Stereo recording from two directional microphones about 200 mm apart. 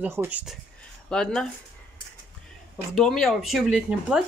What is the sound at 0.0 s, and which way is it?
Speech, 10° right (ahead or behind).